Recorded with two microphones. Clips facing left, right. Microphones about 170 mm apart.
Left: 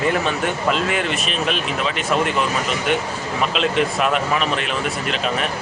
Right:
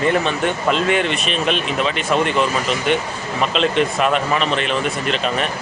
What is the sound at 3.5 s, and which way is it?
Speech, 5° left (ahead or behind).